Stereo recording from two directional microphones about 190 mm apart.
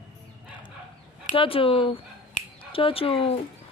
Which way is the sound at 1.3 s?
30° left (ahead or behind).